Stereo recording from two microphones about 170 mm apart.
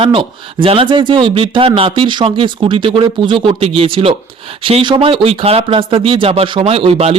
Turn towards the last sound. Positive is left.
turn(degrees=-35)  # may be behind; listen again after turning